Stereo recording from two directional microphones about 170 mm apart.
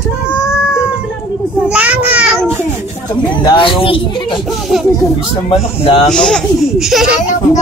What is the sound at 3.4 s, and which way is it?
Speech, 30° left (ahead or behind).